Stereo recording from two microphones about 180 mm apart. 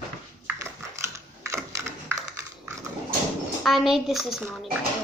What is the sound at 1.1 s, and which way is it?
Typing, 15° right (ahead or behind).